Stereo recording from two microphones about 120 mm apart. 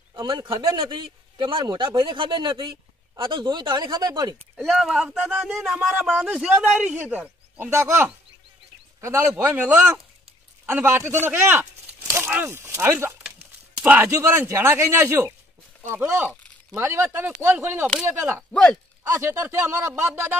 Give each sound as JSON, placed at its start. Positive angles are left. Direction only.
{"t": 0.1, "sound": "a man's voice", "side_deg": -30}
{"t": 4.4, "sound": "speech", "side_deg": 0}
{"t": 9.5, "sound": "speech", "side_deg": -15}
{"t": 18.5, "sound": "speech", "side_deg": 5}
{"t": 19.0, "sound": "speech", "side_deg": -25}